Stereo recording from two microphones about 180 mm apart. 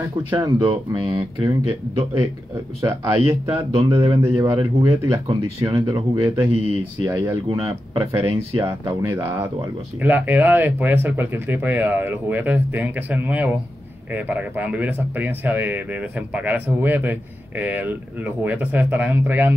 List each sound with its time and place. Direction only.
0.3 s speech: 25° right (ahead or behind)
2.1 s speech: 15° right (ahead or behind)
3.4 s speech: 35° right (ahead or behind)
4.2 s speech: 15° right (ahead or behind); by 8.5 s 35° right (ahead or behind)
8.5 s speech: 15° right (ahead or behind)